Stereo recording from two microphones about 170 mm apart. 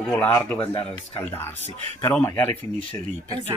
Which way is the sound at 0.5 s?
30° left (ahead or behind).